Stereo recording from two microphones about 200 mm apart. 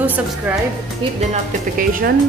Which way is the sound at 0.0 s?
10° right (ahead or behind).